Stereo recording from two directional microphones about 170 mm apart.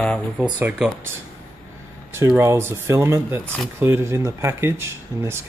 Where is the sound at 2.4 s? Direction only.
15° right (ahead or behind).